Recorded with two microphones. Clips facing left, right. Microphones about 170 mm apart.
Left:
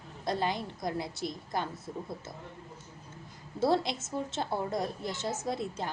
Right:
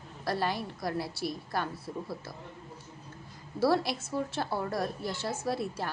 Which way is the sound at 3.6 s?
20° left (ahead or behind).